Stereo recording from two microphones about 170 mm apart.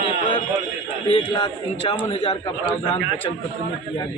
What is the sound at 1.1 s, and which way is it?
A man's voice, 30° left (ahead or behind).